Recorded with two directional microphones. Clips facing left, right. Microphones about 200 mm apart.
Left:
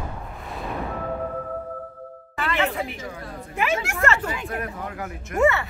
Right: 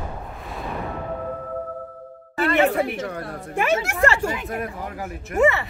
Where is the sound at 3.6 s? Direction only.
40° right (ahead or behind).